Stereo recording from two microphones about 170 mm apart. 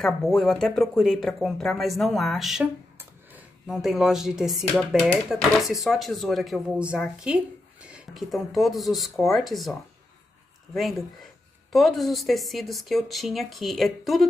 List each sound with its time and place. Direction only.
0.0 s speech: centre (ahead or behind)